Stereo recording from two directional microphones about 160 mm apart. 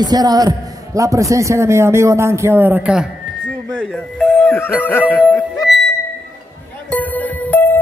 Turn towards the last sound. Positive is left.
turn(degrees=10)  # may be behind; listen again after turning